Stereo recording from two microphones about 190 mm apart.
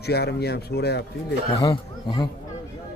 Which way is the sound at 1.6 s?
20° left (ahead or behind).